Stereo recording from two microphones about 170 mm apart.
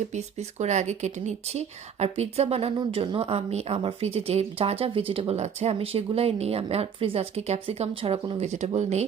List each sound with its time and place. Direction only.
0.1 s speech: 40° right (ahead or behind)